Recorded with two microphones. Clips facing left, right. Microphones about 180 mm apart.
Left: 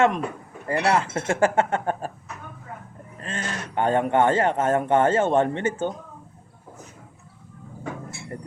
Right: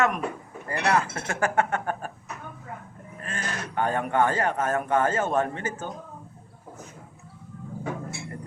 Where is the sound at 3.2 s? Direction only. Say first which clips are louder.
Left 2 dB; 25° left (ahead or behind).